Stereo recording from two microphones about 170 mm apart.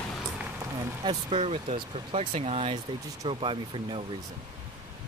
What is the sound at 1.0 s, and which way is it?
Speech, 35° right (ahead or behind).